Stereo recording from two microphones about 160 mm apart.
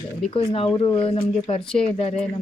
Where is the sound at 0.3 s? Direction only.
35° left (ahead or behind).